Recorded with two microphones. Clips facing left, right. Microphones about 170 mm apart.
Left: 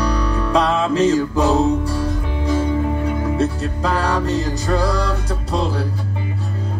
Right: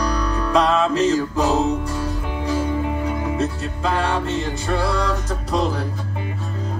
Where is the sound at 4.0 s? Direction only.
35° left (ahead or behind).